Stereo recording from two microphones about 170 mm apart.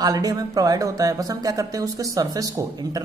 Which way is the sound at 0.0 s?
20° right (ahead or behind).